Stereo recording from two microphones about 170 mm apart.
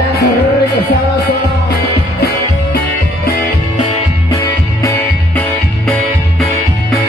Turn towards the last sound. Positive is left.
turn(degrees=20)  # may be behind; listen again after turning